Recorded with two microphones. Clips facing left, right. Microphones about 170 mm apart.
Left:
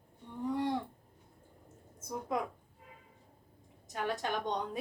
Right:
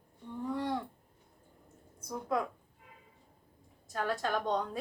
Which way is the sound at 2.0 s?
20° left (ahead or behind).